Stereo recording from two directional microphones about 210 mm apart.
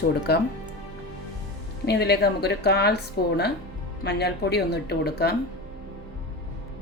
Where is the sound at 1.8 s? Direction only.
50° left (ahead or behind).